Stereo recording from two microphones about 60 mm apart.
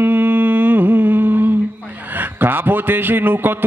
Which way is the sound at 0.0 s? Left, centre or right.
Right.